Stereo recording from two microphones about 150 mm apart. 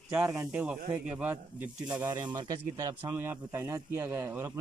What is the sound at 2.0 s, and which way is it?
Speech, 30° right (ahead or behind).